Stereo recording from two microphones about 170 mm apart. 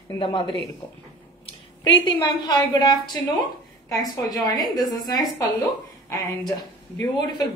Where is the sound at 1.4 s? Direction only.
30° left (ahead or behind).